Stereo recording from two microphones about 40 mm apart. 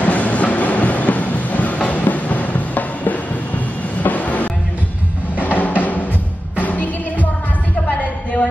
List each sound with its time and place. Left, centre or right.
0.0 s train: left
5.4 s music: left